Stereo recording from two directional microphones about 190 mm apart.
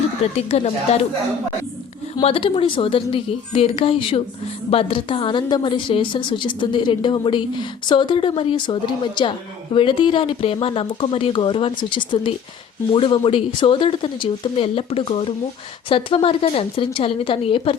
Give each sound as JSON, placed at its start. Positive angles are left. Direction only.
{"t": 0.3, "sound": "speech", "side_deg": 35}
{"t": 2.2, "sound": "a woman's voice", "side_deg": 30}